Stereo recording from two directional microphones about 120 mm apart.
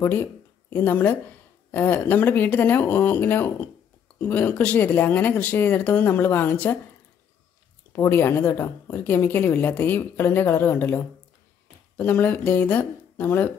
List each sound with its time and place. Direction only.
0.0 s a woman's voice: 15° left (ahead or behind)
7.9 s a woman's voice: 20° left (ahead or behind)